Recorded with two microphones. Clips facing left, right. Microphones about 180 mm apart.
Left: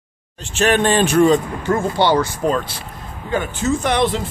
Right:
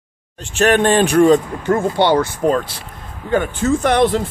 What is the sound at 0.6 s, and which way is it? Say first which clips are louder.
Speech: right 2 dB; 50° right (ahead or behind).